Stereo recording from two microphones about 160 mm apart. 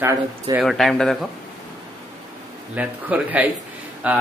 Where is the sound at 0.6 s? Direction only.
Centre (ahead or behind).